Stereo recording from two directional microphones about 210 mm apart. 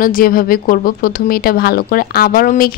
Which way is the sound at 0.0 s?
40° left (ahead or behind).